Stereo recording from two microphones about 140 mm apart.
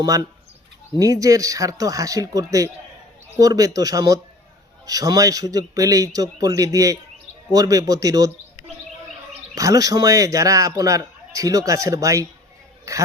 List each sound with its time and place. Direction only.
0.9 s a man's voice: 25° right (ahead or behind)
9.6 s a man's voice: 25° right (ahead or behind)